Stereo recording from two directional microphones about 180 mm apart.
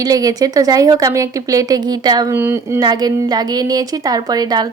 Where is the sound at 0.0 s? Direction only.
20° right (ahead or behind).